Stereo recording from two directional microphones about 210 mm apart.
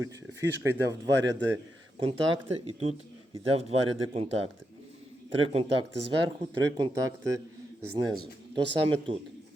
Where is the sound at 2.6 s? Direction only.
30° right (ahead or behind).